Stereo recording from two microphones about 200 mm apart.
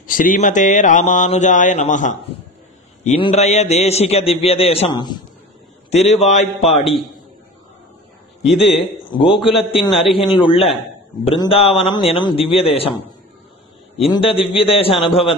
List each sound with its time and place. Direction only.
0.0 s mantra: 40° left (ahead or behind)
4.5 s speech: 30° left (ahead or behind)
5.9 s mantra: 35° left (ahead or behind)
6.8 s a man's voice: centre (ahead or behind)
8.4 s a man's voice: centre (ahead or behind)
10.1 s speech: 25° left (ahead or behind)
14.1 s speech: 25° left (ahead or behind)